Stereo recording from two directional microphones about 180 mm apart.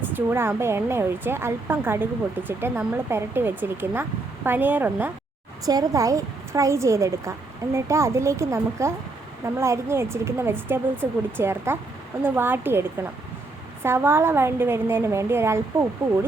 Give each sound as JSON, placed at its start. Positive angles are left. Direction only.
{"t": 0.1, "sound": "speech", "side_deg": -10}